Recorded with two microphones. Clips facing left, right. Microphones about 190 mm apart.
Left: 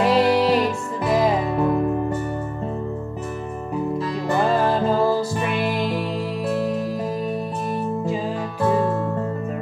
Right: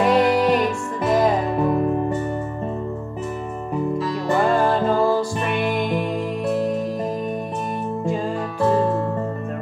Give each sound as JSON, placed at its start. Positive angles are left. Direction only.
{"t": 0.0, "sound": "music", "side_deg": 5}
{"t": 4.6, "sound": "music", "side_deg": 5}
{"t": 8.6, "sound": "music", "side_deg": 5}